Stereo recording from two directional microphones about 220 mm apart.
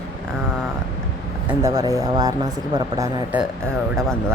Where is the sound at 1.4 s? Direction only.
15° right (ahead or behind).